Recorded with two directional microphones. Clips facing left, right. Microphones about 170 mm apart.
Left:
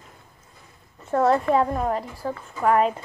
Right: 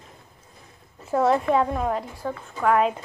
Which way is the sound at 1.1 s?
5° right (ahead or behind).